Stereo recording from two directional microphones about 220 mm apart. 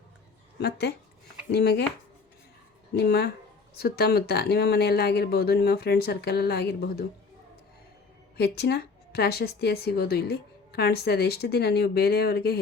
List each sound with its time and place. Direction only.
0.6 s a woman's voice: 50° left (ahead or behind)
2.9 s a woman's voice: 50° left (ahead or behind)
8.4 s a woman's voice: 45° left (ahead or behind)